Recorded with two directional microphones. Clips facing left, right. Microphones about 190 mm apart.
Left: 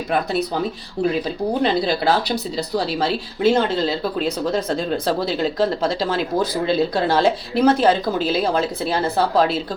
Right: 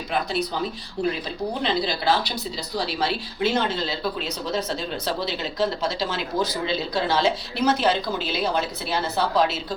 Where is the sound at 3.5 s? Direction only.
45° left (ahead or behind).